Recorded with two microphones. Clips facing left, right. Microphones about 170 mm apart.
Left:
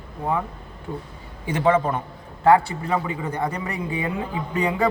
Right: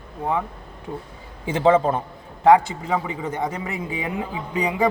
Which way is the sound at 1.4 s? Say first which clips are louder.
Right 2 dB; 25° right (ahead or behind).